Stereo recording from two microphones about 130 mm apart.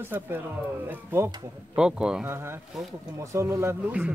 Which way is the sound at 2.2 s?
15° right (ahead or behind).